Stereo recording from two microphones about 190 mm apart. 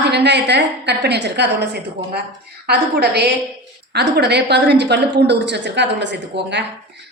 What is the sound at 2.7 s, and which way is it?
A woman's voice, 60° right (ahead or behind).